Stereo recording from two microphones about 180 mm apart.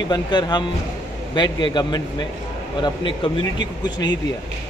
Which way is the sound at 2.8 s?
30° left (ahead or behind).